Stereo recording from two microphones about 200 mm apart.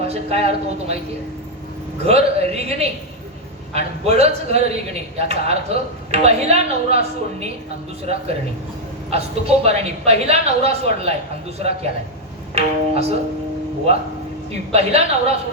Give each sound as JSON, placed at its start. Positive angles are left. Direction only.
{"t": 0.0, "sound": "a woman's voice", "side_deg": -30}
{"t": 2.0, "sound": "a woman's voice", "side_deg": -30}
{"t": 12.5, "sound": "music", "side_deg": -30}
{"t": 14.7, "sound": "a woman's voice", "side_deg": -30}